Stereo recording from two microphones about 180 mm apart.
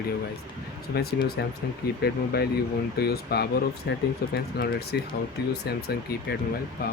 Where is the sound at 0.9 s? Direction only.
60° left (ahead or behind).